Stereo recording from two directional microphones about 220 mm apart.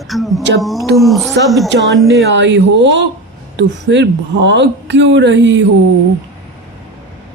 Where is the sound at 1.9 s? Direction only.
Centre (ahead or behind).